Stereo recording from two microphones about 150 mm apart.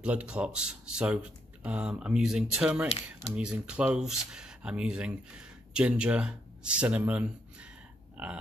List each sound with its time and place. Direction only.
0.0 s speech: 10° right (ahead or behind)